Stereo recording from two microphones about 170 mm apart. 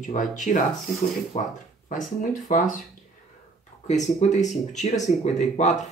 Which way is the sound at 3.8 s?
45° left (ahead or behind).